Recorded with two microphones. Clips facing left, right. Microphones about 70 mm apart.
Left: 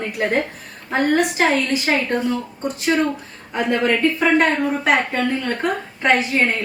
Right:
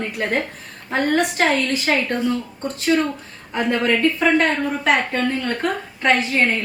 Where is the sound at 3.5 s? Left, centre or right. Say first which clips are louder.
Even; centre.